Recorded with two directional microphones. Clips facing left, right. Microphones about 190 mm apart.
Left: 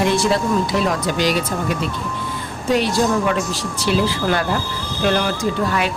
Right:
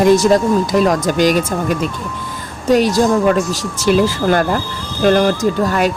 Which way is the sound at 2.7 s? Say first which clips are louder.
Right 5 dB; 40° right (ahead or behind).